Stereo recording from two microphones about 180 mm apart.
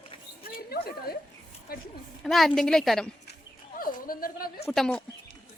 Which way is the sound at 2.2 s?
Centre (ahead or behind).